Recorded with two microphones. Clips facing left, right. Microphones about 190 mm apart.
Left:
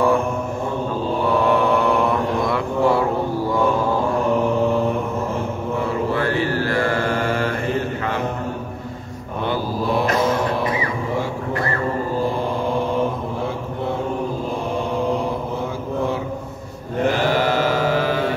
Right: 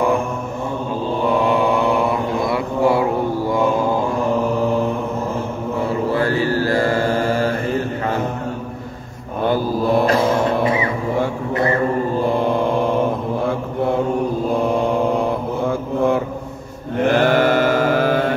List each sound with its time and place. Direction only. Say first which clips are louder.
1.5 s mantra: right 1 dB; 10° right (ahead or behind)
6.5 s mantra: right 3 dB; 35° right (ahead or behind)
9.4 s mantra: right 5 dB; 45° right (ahead or behind)
17.1 s chant: right 6 dB; 55° right (ahead or behind)